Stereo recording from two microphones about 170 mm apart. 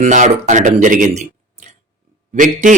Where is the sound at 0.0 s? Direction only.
45° right (ahead or behind).